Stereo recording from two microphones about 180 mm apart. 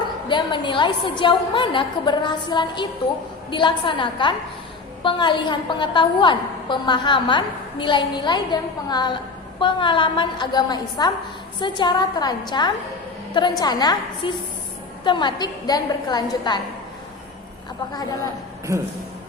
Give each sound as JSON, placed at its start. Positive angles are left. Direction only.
{"t": 0.3, "sound": "a woman's voice", "side_deg": 25}